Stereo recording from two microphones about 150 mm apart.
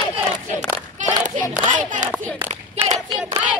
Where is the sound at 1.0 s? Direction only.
55° right (ahead or behind).